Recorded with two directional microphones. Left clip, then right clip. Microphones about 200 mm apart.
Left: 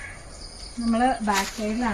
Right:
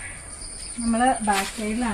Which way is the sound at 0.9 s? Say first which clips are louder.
Right 2 dB; 15° left (ahead or behind).